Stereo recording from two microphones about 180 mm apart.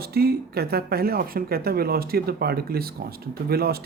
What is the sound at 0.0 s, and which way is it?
Speech, 60° right (ahead or behind).